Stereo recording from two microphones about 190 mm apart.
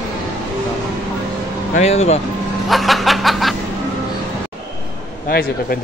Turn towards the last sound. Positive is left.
turn(degrees=50)  # may be behind; listen again after turning